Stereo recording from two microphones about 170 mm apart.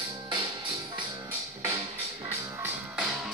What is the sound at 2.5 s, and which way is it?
Music, 10° right (ahead or behind).